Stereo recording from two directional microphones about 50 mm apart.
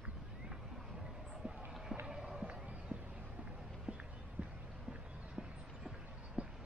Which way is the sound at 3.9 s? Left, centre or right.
Centre.